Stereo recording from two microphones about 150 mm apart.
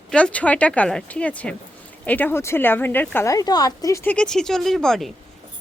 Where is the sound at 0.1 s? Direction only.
10° left (ahead or behind).